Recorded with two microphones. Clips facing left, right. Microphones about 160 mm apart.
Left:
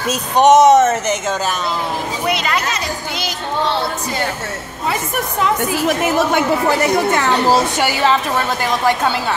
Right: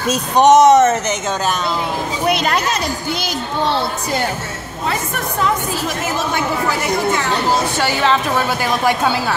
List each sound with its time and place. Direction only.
0.1 s speech: 5° left (ahead or behind)
2.2 s speech: 55° right (ahead or behind)
5.9 s a woman's voice: 60° left (ahead or behind)
7.7 s speech: 10° left (ahead or behind)